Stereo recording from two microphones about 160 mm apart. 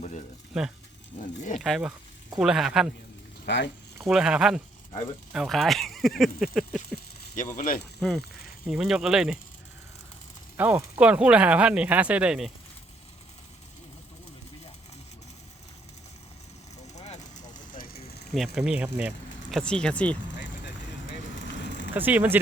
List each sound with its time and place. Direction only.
0.5 s speech: 5° right (ahead or behind)
3.4 s speech: 90° left
4.0 s speech: 5° right (ahead or behind)
7.3 s speech: 55° left (ahead or behind)
7.9 s speech: centre (ahead or behind)
10.6 s speech: 10° right (ahead or behind)
16.7 s vehicle: 45° left (ahead or behind)
17.5 s vehicle: 55° left (ahead or behind)
18.3 s speech: centre (ahead or behind)
21.9 s speech: 10° right (ahead or behind)